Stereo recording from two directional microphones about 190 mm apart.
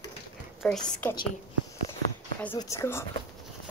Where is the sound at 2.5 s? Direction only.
15° left (ahead or behind).